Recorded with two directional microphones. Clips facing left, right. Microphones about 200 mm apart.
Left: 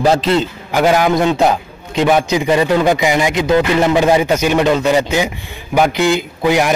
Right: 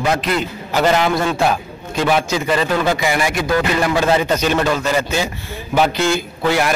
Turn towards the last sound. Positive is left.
turn(degrees=15)  # may be behind; listen again after turning